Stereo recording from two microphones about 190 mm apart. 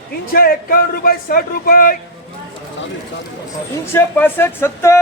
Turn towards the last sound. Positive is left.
turn(degrees=15)  # may be behind; listen again after turning